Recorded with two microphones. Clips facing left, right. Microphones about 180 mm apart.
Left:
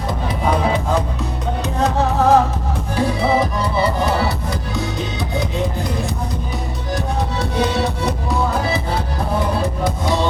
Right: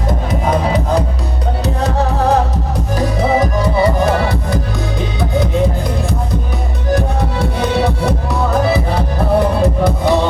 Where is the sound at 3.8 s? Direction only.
50° right (ahead or behind).